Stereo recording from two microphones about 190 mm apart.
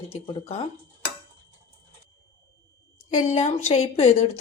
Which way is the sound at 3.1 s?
40° left (ahead or behind).